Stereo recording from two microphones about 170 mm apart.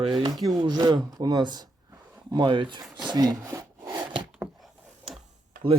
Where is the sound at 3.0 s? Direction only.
25° right (ahead or behind).